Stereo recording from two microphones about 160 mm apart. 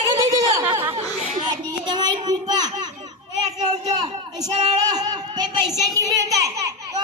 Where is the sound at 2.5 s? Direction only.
25° right (ahead or behind).